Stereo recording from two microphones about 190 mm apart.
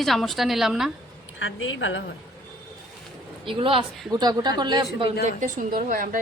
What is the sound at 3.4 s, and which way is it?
A man's voice, 25° right (ahead or behind).